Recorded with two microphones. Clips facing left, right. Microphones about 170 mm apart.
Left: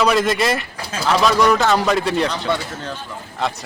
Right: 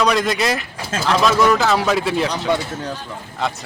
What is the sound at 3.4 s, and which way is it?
Speech, centre (ahead or behind).